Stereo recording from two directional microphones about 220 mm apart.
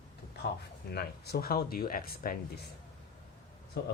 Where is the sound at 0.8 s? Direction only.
45° left (ahead or behind).